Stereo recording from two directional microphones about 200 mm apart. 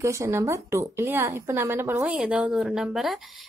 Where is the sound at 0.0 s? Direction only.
15° right (ahead or behind).